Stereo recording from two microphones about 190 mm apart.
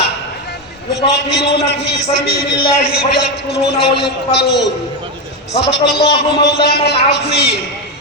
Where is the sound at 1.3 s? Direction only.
60° left (ahead or behind).